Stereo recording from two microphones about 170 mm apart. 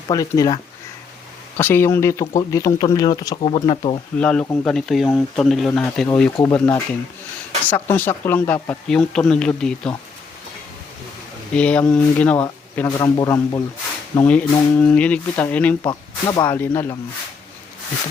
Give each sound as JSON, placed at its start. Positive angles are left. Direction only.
{"t": 0.1, "sound": "speech", "side_deg": 20}
{"t": 4.2, "sound": "speech", "side_deg": 5}
{"t": 11.5, "sound": "speech", "side_deg": 5}
{"t": 13.0, "sound": "speech", "side_deg": 20}
{"t": 14.3, "sound": "speech", "side_deg": 10}
{"t": 15.8, "sound": "speech", "side_deg": 25}
{"t": 16.5, "sound": "speech", "side_deg": 10}